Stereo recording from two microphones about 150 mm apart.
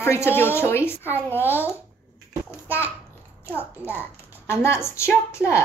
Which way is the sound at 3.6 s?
10° right (ahead or behind).